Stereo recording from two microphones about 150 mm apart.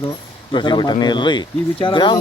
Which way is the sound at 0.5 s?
30° left (ahead or behind).